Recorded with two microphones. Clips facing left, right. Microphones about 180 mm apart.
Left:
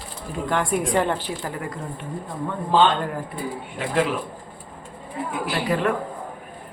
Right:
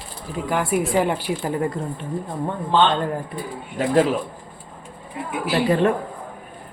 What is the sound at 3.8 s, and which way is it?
Speech, 40° right (ahead or behind).